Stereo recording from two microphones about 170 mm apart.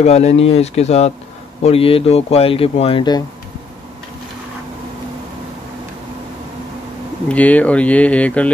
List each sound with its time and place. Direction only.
0.0 s speech: 40° left (ahead or behind)
7.2 s speech: 10° left (ahead or behind)